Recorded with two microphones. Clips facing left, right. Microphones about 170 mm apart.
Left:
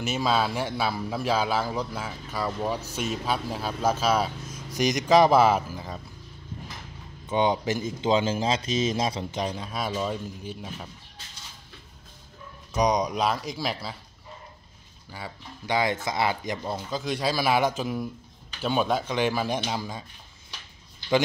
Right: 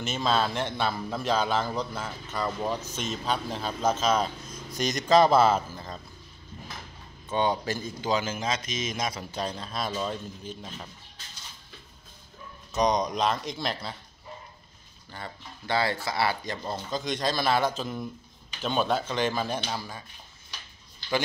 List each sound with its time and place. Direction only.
0.0 s speech: 10° left (ahead or behind)
7.2 s speech: 15° left (ahead or behind)
9.3 s speech: 15° left (ahead or behind)
12.7 s speech: 10° left (ahead or behind)
15.0 s speech: 5° left (ahead or behind)